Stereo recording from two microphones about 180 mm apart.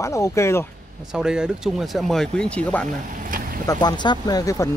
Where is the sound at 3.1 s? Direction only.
50° right (ahead or behind).